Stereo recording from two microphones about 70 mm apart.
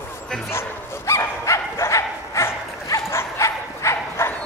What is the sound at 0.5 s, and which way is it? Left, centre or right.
Bow-wow, left.